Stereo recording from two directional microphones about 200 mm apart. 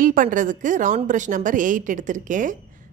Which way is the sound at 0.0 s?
40° right (ahead or behind).